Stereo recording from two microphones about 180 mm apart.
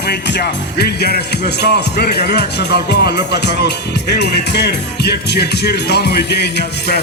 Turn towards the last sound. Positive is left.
turn(degrees=70)  # may be behind; listen again after turning